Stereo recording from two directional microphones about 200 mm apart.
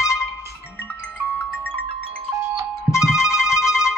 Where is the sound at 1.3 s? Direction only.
5° left (ahead or behind).